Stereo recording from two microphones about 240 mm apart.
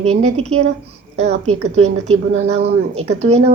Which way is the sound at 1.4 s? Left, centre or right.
Right.